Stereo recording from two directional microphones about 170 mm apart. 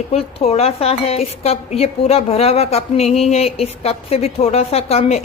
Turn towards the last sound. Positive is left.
turn(degrees=40)  # may be behind; listen again after turning